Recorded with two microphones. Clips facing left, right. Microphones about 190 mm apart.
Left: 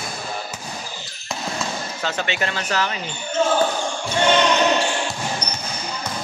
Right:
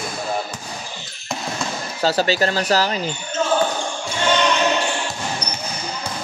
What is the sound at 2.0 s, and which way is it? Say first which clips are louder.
Speech: right 8 dB; 35° right (ahead or behind).